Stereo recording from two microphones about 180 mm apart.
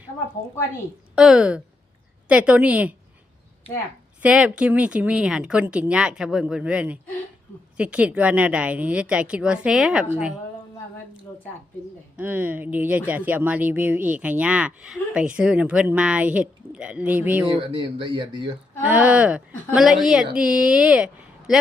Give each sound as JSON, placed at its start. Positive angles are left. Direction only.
{"t": 1.1, "sound": "speech", "side_deg": -5}
{"t": 4.2, "sound": "speech", "side_deg": -5}
{"t": 12.1, "sound": "speech", "side_deg": -10}
{"t": 17.5, "sound": "speech", "side_deg": -25}
{"t": 18.8, "sound": "speech", "side_deg": -5}